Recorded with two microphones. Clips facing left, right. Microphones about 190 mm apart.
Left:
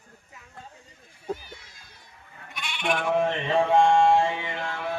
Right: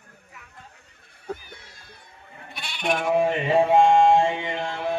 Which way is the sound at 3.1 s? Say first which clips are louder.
Right 5 dB; 10° right (ahead or behind).